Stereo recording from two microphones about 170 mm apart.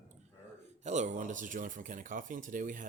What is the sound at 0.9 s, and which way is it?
Speech, 45° right (ahead or behind).